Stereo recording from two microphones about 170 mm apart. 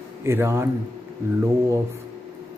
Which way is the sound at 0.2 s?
15° right (ahead or behind).